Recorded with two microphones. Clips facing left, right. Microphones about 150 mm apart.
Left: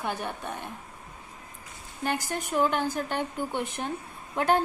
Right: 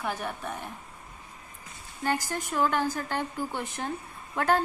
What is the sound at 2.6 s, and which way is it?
A woman's voice, 15° left (ahead or behind).